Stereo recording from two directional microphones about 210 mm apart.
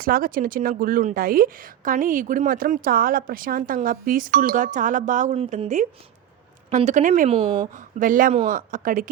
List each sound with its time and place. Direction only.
0.0 s a woman's voice: 45° right (ahead or behind); by 7.7 s 25° right (ahead or behind)
7.7 s a woman's voice: 40° right (ahead or behind)